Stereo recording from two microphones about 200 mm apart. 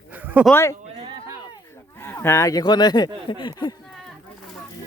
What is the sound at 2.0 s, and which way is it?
Speech, 10° left (ahead or behind).